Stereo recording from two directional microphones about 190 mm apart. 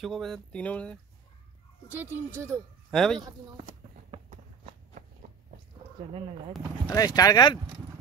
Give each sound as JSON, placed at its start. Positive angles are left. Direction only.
{"t": 0.0, "sound": "speech", "side_deg": 0}
{"t": 1.9, "sound": "speech", "side_deg": -10}
{"t": 2.9, "sound": "speech", "side_deg": 0}
{"t": 6.9, "sound": "speech", "side_deg": 20}